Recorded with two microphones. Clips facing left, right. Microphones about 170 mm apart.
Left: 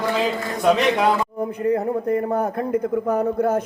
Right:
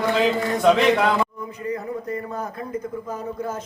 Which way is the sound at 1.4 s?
60° left (ahead or behind).